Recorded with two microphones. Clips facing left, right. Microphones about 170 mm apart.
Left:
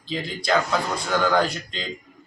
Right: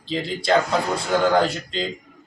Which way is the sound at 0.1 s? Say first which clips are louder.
Right 3 dB; 30° right (ahead or behind).